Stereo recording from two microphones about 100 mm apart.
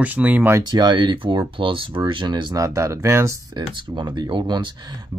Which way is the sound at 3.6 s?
50° right (ahead or behind).